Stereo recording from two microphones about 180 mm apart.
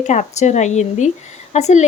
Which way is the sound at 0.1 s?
40° left (ahead or behind).